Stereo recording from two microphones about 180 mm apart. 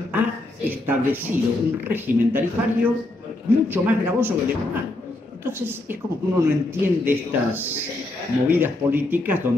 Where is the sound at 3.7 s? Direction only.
10° right (ahead or behind).